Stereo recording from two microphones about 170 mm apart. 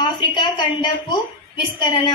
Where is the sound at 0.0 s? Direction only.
25° left (ahead or behind).